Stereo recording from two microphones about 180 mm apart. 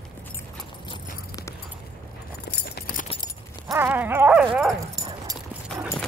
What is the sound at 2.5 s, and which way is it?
Keys jangling, 65° left (ahead or behind).